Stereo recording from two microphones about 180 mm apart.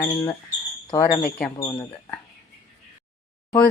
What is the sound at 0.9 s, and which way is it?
Speech, 25° left (ahead or behind).